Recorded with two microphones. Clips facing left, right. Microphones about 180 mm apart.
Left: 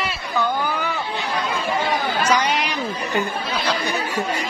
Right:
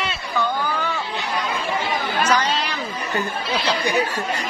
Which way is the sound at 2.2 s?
15° left (ahead or behind).